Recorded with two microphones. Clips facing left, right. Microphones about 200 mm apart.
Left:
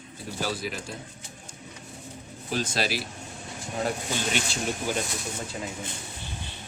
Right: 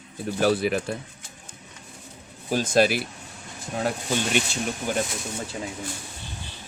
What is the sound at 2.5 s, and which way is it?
Speech, 50° right (ahead or behind).